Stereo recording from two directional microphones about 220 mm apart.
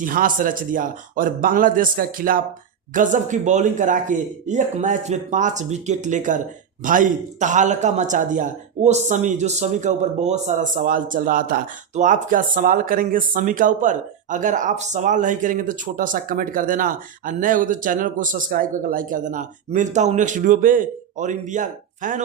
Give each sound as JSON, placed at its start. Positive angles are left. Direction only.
{"t": 0.0, "sound": "a man's voice", "side_deg": -40}